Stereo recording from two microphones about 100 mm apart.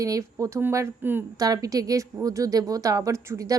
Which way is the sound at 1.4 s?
35° right (ahead or behind).